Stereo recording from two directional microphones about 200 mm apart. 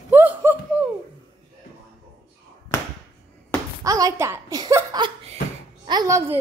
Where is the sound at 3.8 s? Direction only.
15° right (ahead or behind).